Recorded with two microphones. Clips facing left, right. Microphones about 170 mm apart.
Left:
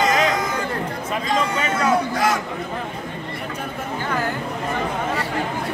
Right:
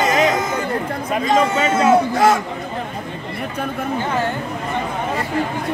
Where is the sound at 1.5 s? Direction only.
25° right (ahead or behind).